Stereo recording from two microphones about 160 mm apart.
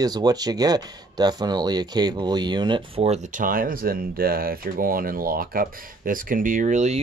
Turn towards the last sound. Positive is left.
turn(degrees=-45)  # may be behind; listen again after turning